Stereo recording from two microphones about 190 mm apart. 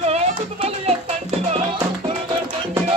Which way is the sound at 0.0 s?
35° right (ahead or behind).